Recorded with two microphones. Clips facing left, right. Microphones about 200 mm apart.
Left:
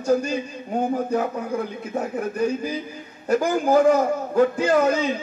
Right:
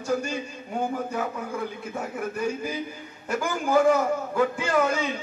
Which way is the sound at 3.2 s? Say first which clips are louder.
Left 7 dB; 40° left (ahead or behind).